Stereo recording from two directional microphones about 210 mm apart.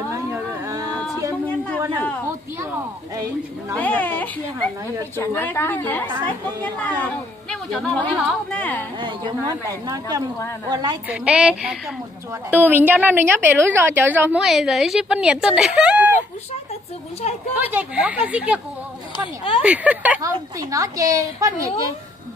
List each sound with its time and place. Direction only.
0.1 s a sound: 15° right (ahead or behind)
3.7 s a woman's voice: 5° left (ahead or behind)
9.0 s a woman's voice: 20° right (ahead or behind)
11.1 s a woman's voice: 5° right (ahead or behind)
17.6 s a woman's voice: 10° right (ahead or behind)
19.6 s a woman's voice: 5° right (ahead or behind)